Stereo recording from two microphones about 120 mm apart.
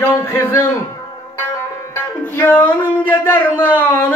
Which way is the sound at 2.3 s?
15° left (ahead or behind).